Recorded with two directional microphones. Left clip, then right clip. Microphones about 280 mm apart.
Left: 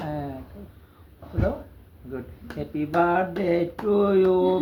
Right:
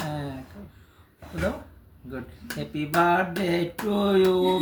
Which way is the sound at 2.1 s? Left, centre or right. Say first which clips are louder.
Left 1 dB; centre.